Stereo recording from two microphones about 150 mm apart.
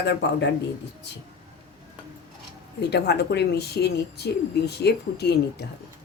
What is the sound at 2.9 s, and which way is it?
Speech, 90° left.